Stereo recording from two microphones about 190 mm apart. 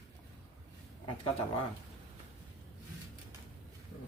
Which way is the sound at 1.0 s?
25° left (ahead or behind).